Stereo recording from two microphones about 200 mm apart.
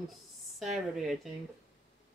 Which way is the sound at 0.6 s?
Centre (ahead or behind).